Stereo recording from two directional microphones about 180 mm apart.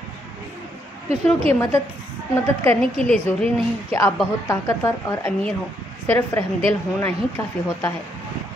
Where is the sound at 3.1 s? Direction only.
5° left (ahead or behind).